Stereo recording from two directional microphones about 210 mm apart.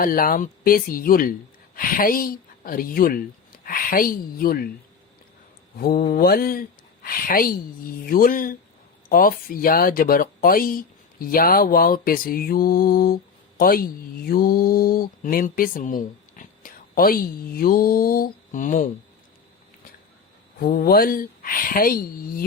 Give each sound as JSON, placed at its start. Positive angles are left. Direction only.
{"t": 0.0, "sound": "speech", "side_deg": 40}
{"t": 5.7, "sound": "speech", "side_deg": 45}
{"t": 20.6, "sound": "speech", "side_deg": 45}